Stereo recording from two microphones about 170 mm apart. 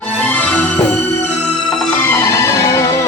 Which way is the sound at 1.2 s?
5° left (ahead or behind).